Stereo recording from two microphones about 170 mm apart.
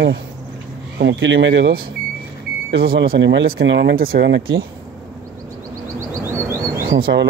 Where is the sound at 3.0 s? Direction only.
90° right.